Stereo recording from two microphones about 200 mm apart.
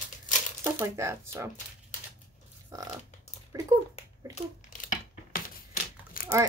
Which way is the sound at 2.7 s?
20° right (ahead or behind).